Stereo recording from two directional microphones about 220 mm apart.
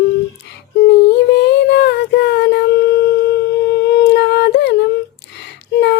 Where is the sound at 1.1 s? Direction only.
50° left (ahead or behind).